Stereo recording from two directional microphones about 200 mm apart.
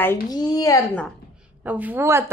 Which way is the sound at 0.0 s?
15° left (ahead or behind).